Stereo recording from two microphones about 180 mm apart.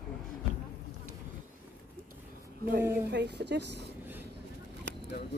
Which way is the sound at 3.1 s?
70° right (ahead or behind).